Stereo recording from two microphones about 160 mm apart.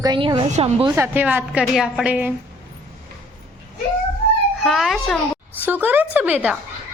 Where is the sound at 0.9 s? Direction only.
15° right (ahead or behind).